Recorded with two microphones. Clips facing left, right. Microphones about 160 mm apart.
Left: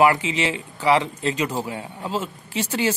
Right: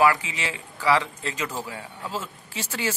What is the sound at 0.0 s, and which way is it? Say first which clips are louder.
A man's voice: left 3 dB; 20° left (ahead or behind).